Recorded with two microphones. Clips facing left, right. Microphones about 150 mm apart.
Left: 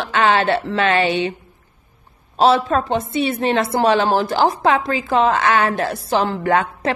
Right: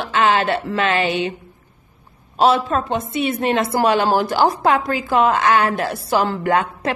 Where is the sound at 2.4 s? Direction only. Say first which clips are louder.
Left 1 dB; 30° left (ahead or behind).